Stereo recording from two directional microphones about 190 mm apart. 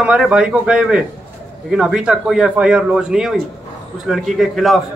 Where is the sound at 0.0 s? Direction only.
5° right (ahead or behind).